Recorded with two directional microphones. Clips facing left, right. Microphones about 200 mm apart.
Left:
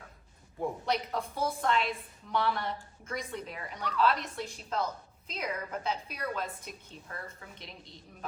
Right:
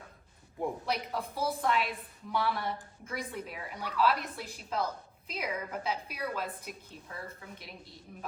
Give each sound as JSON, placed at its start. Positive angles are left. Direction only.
{"t": 0.9, "sound": "a woman's voice", "side_deg": -5}